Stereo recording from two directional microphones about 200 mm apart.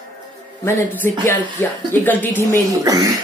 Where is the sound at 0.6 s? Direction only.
10° left (ahead or behind).